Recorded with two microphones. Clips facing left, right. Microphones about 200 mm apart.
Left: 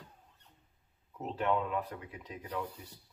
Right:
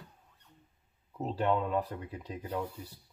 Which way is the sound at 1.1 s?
30° right (ahead or behind).